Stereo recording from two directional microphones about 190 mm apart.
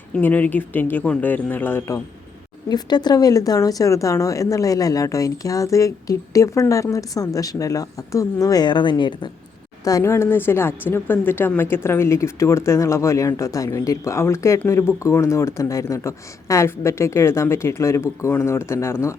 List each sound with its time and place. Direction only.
0.1 s a woman's voice: 10° left (ahead or behind)
2.6 s a woman's voice: 20° left (ahead or behind)